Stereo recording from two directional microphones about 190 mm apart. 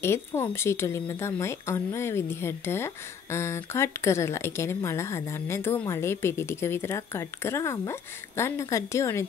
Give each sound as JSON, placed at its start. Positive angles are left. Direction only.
{"t": 0.0, "sound": "speech", "side_deg": 15}